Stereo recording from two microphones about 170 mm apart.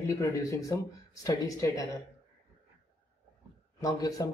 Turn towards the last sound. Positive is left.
turn(degrees=20)  # may be behind; listen again after turning